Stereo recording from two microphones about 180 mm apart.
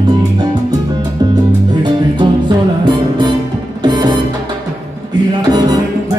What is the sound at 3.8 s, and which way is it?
Music, 25° right (ahead or behind).